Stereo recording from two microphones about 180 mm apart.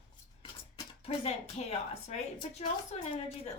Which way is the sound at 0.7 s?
35° left (ahead or behind).